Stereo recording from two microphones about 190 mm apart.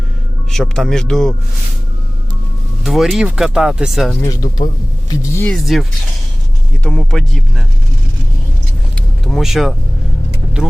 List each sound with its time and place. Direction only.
0.5 s speech: centre (ahead or behind)
2.8 s speech: centre (ahead or behind)
4.2 s speech: 20° left (ahead or behind); by 5.8 s centre (ahead or behind)
6.8 s speech: 5° left (ahead or behind)
9.0 s speech: centre (ahead or behind)